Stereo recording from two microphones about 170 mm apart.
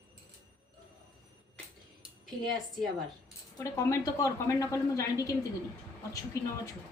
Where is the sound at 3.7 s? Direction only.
20° left (ahead or behind).